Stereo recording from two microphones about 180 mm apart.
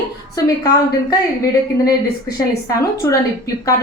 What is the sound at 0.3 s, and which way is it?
Speech, 20° left (ahead or behind).